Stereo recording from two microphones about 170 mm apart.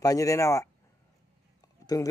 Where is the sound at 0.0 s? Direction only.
20° left (ahead or behind).